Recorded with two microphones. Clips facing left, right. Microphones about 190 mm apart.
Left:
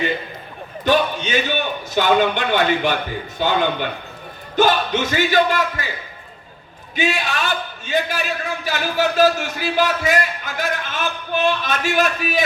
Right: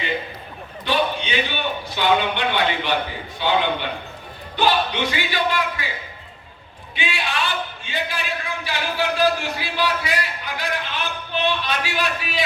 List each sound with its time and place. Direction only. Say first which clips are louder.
0.9 s a sound: left 4 dB; 45° left (ahead or behind)
2.0 s a man's voice: left 4 dB; 45° left (ahead or behind)
6.9 s a man's voice: left 5 dB; 45° left (ahead or behind)